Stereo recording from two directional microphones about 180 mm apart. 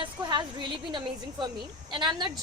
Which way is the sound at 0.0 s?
25° right (ahead or behind).